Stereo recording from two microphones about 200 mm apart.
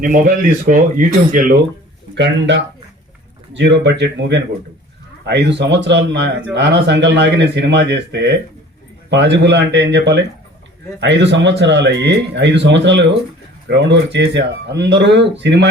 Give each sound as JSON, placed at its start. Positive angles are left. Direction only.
{"t": 0.0, "sound": "speech", "side_deg": -45}
{"t": 2.1, "sound": "speech", "side_deg": -65}